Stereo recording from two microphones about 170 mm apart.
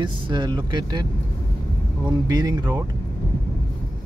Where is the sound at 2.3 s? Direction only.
25° right (ahead or behind).